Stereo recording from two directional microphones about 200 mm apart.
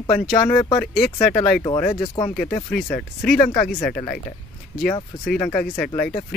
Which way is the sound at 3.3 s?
45° left (ahead or behind).